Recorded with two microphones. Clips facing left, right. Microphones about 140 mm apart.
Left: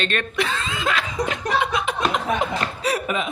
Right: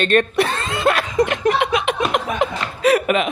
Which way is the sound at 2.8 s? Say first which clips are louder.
Right 10 dB; 80° right.